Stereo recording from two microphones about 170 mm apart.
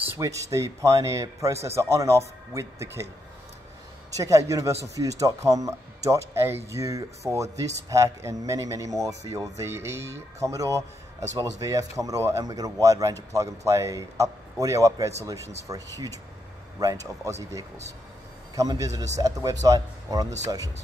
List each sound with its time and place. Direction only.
0.1 s a man's voice: 20° right (ahead or behind)
4.2 s a man's voice: 20° right (ahead or behind)